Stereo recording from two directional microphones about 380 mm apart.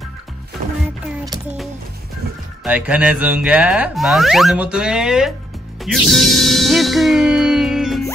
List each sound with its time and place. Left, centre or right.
2.6 s speech: centre